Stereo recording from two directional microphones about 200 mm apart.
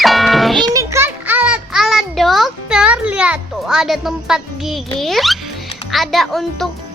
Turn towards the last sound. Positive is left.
turn(degrees=0)  # may be behind; listen again after turning